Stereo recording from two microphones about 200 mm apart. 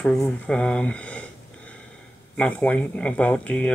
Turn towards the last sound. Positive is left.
turn(degrees=5)  # may be behind; listen again after turning